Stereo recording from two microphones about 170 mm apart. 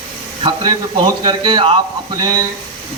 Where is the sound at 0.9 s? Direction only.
25° right (ahead or behind).